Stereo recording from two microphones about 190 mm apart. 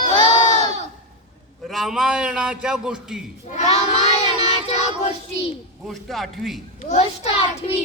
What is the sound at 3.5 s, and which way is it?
Child singing, 35° left (ahead or behind).